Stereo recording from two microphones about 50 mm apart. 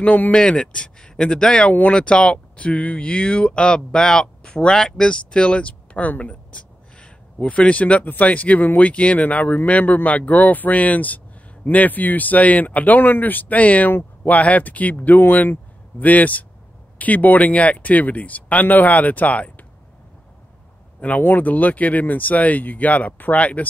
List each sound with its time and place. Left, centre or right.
0.0 s speech: left
0.3 s speech: centre
1.7 s speech: left
21.2 s speech: left